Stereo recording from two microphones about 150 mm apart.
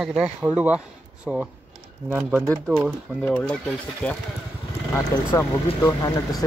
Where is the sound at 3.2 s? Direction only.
5° left (ahead or behind).